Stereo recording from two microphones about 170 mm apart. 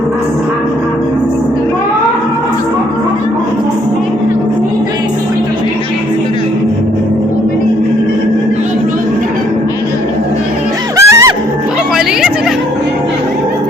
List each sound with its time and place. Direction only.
10.9 s music: 20° right (ahead or behind)